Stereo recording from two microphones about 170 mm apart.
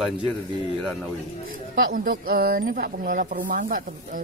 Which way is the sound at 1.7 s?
55° right (ahead or behind).